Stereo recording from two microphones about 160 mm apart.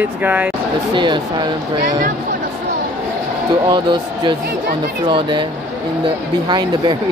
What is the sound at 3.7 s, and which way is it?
Speech, 30° right (ahead or behind).